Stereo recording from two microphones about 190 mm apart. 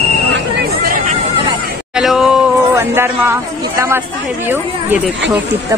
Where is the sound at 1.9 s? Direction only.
5° right (ahead or behind).